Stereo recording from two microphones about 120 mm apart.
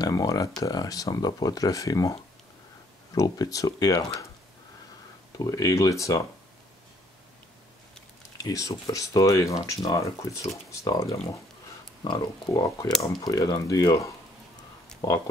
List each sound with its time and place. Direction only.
0.0 s speech: 30° left (ahead or behind)
3.2 s speech: 30° left (ahead or behind)
5.4 s speech: 30° left (ahead or behind)
8.4 s speech: 30° left (ahead or behind)
12.0 s speech: 40° left (ahead or behind)